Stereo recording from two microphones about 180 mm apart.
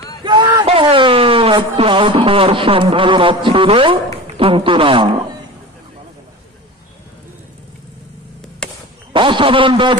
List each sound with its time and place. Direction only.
0.2 s speech: 25° right (ahead or behind)
8.6 s a sound: 5° left (ahead or behind)
9.1 s speech: 30° right (ahead or behind)